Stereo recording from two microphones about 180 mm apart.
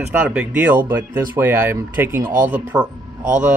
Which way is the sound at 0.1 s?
10° right (ahead or behind).